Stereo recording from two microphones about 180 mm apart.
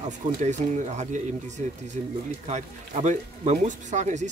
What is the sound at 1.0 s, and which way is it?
Speech, 40° right (ahead or behind).